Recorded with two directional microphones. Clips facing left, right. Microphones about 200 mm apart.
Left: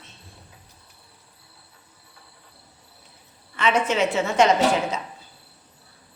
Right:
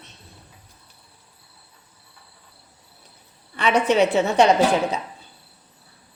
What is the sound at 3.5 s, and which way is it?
Speech, 35° right (ahead or behind).